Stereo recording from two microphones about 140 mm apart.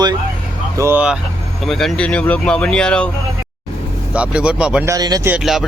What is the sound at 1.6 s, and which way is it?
Speech, 5° left (ahead or behind).